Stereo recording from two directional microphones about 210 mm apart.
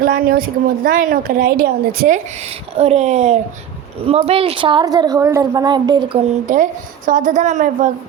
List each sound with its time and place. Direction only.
0.0 s a woman's voice: 45° right (ahead or behind); by 6.0 s 20° right (ahead or behind)
6.5 s a woman's voice: 40° right (ahead or behind)